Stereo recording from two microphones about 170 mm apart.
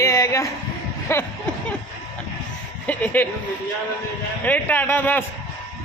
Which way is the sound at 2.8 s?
10° left (ahead or behind).